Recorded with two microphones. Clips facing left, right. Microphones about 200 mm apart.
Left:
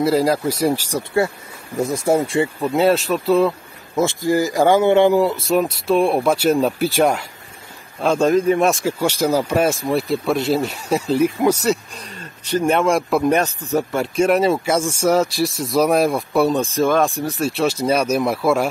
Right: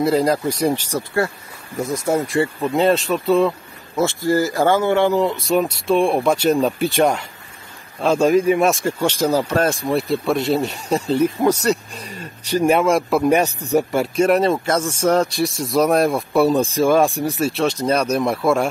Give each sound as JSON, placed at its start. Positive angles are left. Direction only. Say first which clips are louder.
{"t": 0.0, "sound": "speech", "louder": "even", "side_deg": 5}
{"t": 2.0, "sound": "speech", "louder": "left 1 dB", "side_deg": 25}
{"t": 2.4, "sound": "speech", "louder": "left 1 dB", "side_deg": 5}
{"t": 3.9, "sound": "speech", "louder": "even", "side_deg": 15}
{"t": 5.2, "sound": "speech", "louder": "left 1 dB", "side_deg": 0}
{"t": 14.0, "sound": "speech", "louder": "even", "side_deg": 0}
{"t": 17.4, "sound": "speech", "louder": "left 1 dB", "side_deg": 0}